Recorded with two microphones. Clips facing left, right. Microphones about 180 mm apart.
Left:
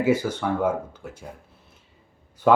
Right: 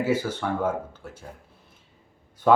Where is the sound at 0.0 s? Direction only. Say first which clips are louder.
Left 3 dB; 15° left (ahead or behind).